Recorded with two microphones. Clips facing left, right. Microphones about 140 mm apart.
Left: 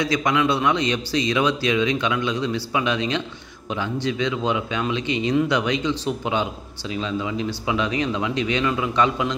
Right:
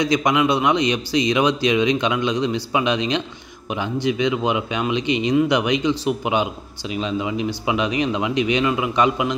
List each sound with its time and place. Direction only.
0.0 s speech: 20° right (ahead or behind)